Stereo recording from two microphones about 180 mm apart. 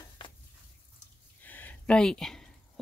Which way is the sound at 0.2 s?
25° left (ahead or behind).